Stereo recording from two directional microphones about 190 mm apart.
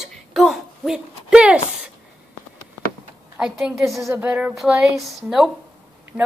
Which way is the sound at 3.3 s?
5° right (ahead or behind).